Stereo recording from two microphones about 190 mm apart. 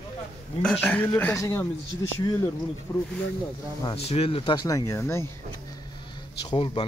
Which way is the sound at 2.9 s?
15° left (ahead or behind).